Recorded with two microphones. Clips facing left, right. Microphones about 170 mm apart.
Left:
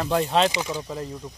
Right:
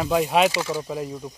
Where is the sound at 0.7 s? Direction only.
10° right (ahead or behind).